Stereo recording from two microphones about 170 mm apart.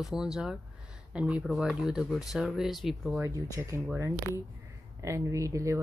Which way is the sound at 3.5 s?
20° right (ahead or behind).